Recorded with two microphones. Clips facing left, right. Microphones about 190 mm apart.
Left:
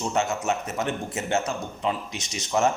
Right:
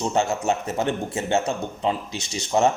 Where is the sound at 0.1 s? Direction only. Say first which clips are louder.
Right 2 dB; 30° right (ahead or behind).